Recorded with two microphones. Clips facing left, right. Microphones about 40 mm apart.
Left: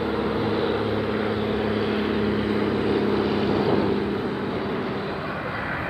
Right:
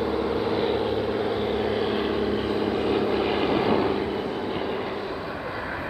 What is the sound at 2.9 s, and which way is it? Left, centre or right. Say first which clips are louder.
Vehicle: left 1 dB; right.